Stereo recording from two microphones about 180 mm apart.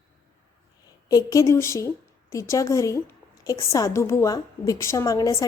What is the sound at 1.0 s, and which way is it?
A woman's voice, 20° left (ahead or behind).